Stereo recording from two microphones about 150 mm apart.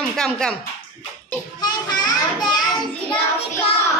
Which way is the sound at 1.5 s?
30° left (ahead or behind).